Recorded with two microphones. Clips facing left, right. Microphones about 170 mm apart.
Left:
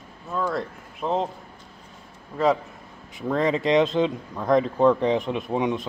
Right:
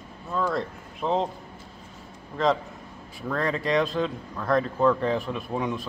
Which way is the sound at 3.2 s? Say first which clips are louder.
Left 5 dB; 20° left (ahead or behind).